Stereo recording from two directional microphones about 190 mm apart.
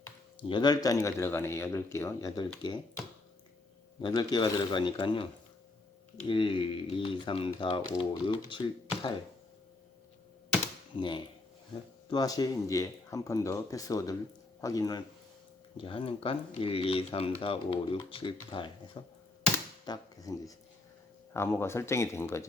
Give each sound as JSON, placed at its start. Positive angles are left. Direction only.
{"t": 0.4, "sound": "speech", "side_deg": 25}
{"t": 4.0, "sound": "speech", "side_deg": 20}
{"t": 10.9, "sound": "speech", "side_deg": 25}
{"t": 19.8, "sound": "speech", "side_deg": 20}